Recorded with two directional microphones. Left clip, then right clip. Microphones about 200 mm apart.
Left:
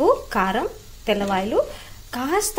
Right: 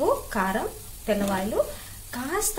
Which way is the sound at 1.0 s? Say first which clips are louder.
Left 4 dB; 20° left (ahead or behind).